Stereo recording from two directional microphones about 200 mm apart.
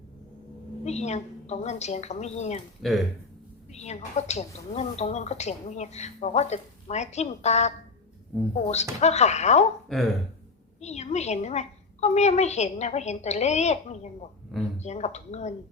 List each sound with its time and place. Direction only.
0.9 s a woman's voice: 35° left (ahead or behind)
2.8 s speech: centre (ahead or behind)
3.7 s a woman's voice: 35° left (ahead or behind)
8.3 s speech: centre (ahead or behind)
8.7 s a woman's voice: 35° left (ahead or behind)
9.9 s speech: centre (ahead or behind)
10.8 s a woman's voice: 35° left (ahead or behind)